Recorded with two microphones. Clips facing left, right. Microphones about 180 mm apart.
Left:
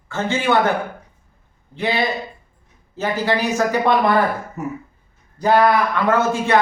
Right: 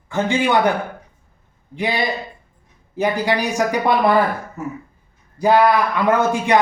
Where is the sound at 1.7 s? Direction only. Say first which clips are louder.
Even; 15° right (ahead or behind).